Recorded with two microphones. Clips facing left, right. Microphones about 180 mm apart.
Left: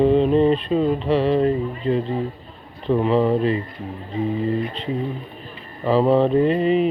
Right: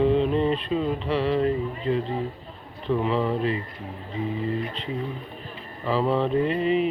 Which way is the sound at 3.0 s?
25° left (ahead or behind).